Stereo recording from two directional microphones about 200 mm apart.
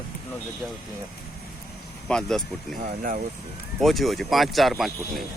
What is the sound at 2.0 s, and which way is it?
Speech, 5° left (ahead or behind).